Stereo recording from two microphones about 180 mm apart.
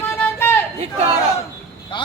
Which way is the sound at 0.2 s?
15° left (ahead or behind).